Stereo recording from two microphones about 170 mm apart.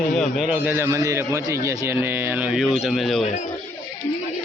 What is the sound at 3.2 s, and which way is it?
Speech, 40° left (ahead or behind).